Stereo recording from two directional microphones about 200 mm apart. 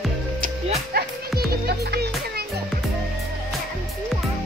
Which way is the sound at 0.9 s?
50° right (ahead or behind).